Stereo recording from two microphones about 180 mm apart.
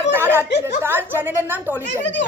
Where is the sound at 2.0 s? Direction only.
80° left.